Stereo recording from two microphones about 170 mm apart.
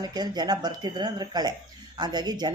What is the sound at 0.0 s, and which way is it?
Speech, 25° right (ahead or behind).